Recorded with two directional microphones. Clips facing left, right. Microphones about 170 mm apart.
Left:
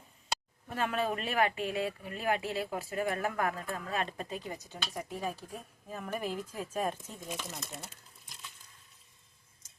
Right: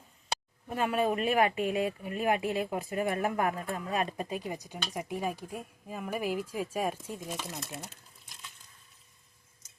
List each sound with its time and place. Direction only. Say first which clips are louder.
0.7 s speech: right 4 dB; 10° right (ahead or behind)